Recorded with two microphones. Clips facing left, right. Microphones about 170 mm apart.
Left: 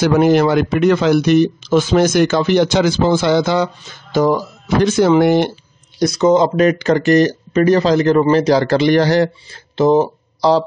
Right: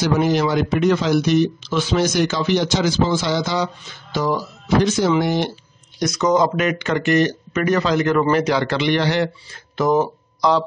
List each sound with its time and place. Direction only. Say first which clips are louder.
0.0 s speech: left 6 dB; 55° left (ahead or behind)
5.9 s speech: left 5 dB; 30° left (ahead or behind)
9.8 s speech: left 5 dB; 30° left (ahead or behind)